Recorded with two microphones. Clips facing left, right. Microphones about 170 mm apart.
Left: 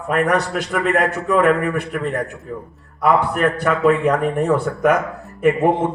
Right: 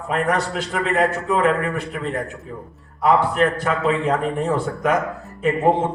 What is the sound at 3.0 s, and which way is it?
A man's voice, 60° left (ahead or behind).